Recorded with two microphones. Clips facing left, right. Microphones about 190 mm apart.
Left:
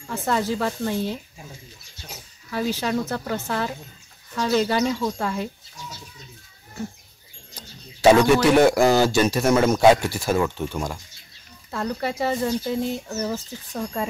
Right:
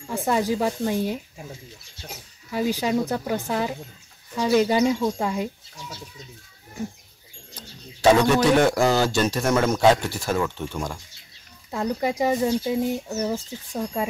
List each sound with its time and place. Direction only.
0.0 s speech: 15° right (ahead or behind)
2.5 s speech: 15° right (ahead or behind)
7.5 s speech: 10° left (ahead or behind)
11.7 s speech: 15° right (ahead or behind)